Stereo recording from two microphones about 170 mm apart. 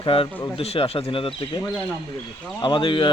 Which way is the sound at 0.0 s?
30° left (ahead or behind).